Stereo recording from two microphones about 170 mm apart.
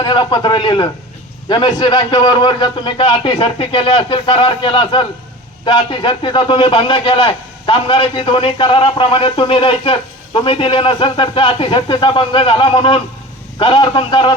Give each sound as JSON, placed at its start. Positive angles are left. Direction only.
{"t": 0.0, "sound": "a man's voice", "side_deg": 25}